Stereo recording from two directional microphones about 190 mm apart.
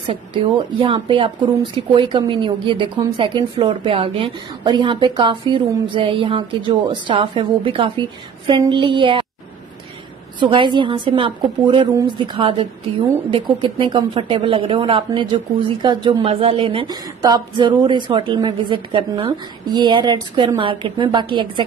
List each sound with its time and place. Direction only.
0.1 s speech: 25° right (ahead or behind)
10.4 s speech: 25° right (ahead or behind)